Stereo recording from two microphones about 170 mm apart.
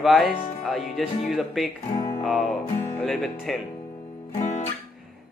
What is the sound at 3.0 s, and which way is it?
Speech, centre (ahead or behind).